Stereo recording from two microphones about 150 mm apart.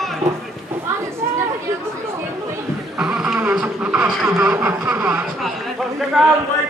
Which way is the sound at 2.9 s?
5° right (ahead or behind).